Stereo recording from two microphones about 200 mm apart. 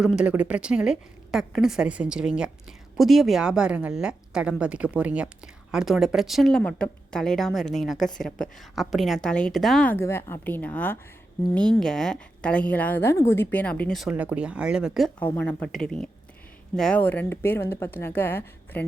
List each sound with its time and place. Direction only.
0.0 s a woman's voice: 5° right (ahead or behind)